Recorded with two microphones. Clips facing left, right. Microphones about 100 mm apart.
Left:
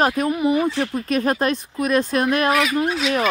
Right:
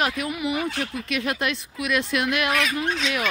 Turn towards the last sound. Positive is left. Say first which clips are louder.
# left 5 dB
turn(degrees=5)  # may be behind; listen again after turning